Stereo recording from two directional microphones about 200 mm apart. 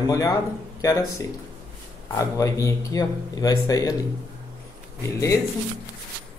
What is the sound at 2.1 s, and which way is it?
Speech, 15° left (ahead or behind).